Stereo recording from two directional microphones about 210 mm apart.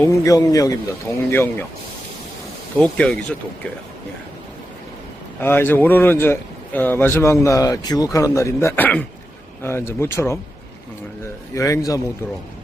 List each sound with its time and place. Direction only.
0.1 s a man's voice: 15° left (ahead or behind)
2.7 s speech: 5° left (ahead or behind)
5.4 s a man's voice: 10° left (ahead or behind)
11.5 s a man's voice: 15° left (ahead or behind)